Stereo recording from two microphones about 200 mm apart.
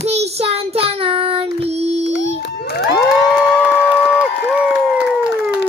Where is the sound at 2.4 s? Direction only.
55° left (ahead or behind).